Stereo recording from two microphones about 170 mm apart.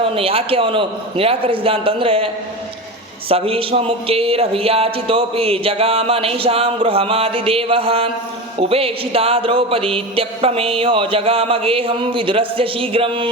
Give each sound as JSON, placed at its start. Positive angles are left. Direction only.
{"t": 0.0, "sound": "speech", "side_deg": -35}